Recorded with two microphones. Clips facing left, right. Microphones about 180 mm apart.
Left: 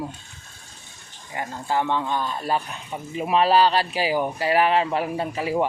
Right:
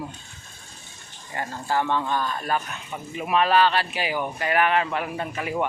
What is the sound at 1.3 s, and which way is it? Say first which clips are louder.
Speech: left 1 dB; 15° left (ahead or behind).